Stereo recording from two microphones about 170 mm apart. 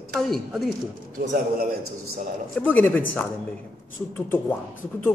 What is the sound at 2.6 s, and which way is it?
Speech, 10° left (ahead or behind).